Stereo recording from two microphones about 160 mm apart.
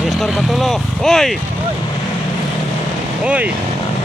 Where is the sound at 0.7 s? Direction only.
Centre (ahead or behind).